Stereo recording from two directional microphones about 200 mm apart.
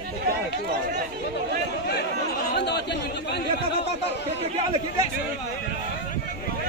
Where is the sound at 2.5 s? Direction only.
55° left (ahead or behind).